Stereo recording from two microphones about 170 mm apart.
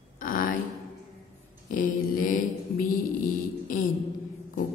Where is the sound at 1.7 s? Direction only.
55° left (ahead or behind).